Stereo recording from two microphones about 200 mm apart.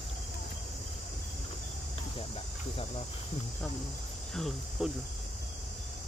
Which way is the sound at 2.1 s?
25° left (ahead or behind).